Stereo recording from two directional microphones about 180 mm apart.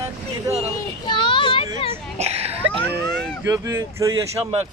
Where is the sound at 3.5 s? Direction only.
15° right (ahead or behind).